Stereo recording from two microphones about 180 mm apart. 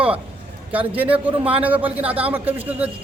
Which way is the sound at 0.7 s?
10° right (ahead or behind).